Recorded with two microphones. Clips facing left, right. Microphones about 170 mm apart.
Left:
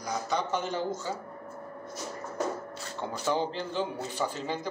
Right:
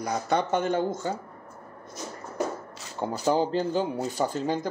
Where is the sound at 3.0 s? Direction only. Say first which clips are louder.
Right 5 dB; 40° right (ahead or behind).